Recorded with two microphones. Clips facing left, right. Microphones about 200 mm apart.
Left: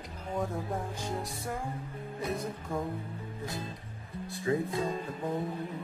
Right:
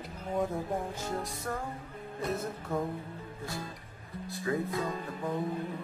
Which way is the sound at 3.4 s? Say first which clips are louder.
Even; 20° left (ahead or behind).